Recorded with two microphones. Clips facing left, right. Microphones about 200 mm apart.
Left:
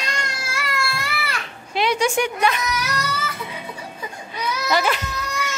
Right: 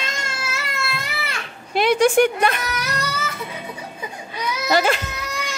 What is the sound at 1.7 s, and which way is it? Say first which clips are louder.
Speech: right 5 dB; 50° right (ahead or behind).